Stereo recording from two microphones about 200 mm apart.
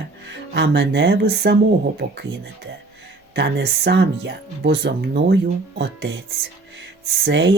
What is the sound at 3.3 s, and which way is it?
Speech, 60° right (ahead or behind).